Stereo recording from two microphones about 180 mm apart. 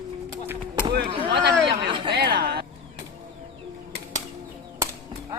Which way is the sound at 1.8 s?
25° right (ahead or behind).